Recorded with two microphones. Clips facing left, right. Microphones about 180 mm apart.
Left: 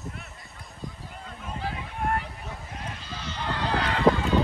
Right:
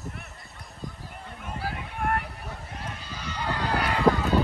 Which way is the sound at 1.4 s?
5° right (ahead or behind).